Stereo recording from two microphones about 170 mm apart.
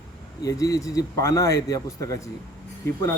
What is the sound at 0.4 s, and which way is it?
A man's voice, 20° left (ahead or behind).